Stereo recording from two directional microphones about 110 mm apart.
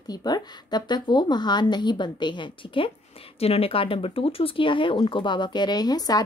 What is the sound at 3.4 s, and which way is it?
Speech, 65° left (ahead or behind).